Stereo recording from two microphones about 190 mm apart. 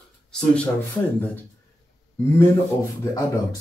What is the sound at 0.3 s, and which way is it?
Speech, 5° left (ahead or behind).